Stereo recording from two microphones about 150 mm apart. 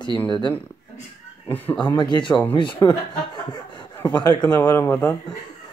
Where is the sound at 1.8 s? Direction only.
30° left (ahead or behind).